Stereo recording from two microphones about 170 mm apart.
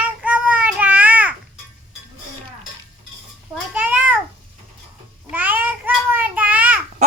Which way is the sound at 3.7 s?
10° right (ahead or behind).